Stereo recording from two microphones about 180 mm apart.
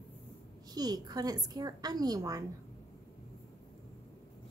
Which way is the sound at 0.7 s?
20° right (ahead or behind).